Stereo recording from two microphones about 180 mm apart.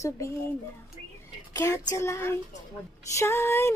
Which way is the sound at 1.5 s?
15° left (ahead or behind).